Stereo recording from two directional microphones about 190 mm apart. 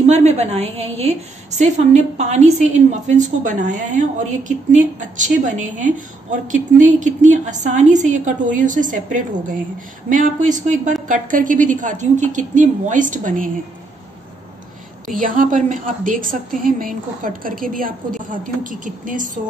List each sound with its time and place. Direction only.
0.0 s a woman's voice: 35° right (ahead or behind)
15.1 s a woman's voice: 45° right (ahead or behind)